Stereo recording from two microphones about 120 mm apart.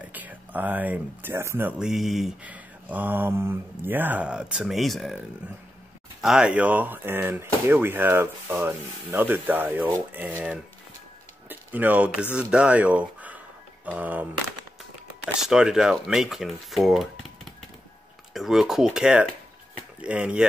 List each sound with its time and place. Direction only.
0.1 s speech: 15° right (ahead or behind)
1.8 s speech: 5° right (ahead or behind)
2.4 s speech: 15° right (ahead or behind)
6.2 s speech: 5° right (ahead or behind)
15.4 s speech: 5° right (ahead or behind)